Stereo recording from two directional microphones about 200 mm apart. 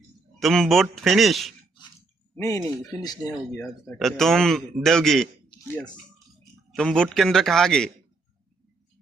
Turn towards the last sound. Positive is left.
turn(degrees=0)  # may be behind; listen again after turning